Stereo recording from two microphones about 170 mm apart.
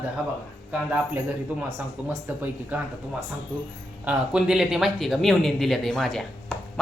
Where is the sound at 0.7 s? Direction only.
10° right (ahead or behind).